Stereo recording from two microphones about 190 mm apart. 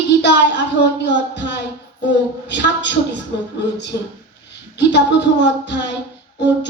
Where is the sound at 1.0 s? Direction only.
70° left (ahead or behind).